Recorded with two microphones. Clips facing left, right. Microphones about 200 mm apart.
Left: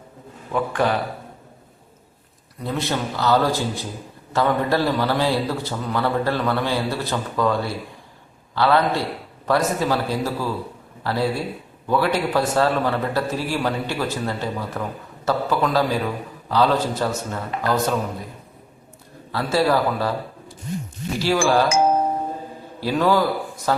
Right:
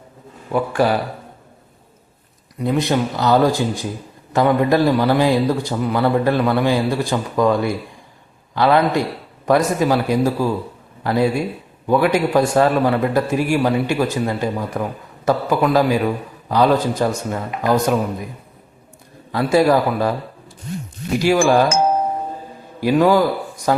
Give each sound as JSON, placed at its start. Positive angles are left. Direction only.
{"t": 0.5, "sound": "a man's voice", "side_deg": -10}
{"t": 2.6, "sound": "a man's voice", "side_deg": -15}
{"t": 19.3, "sound": "a man's voice", "side_deg": -15}
{"t": 21.2, "sound": "a man's voice", "side_deg": -15}
{"t": 22.8, "sound": "a man's voice", "side_deg": -15}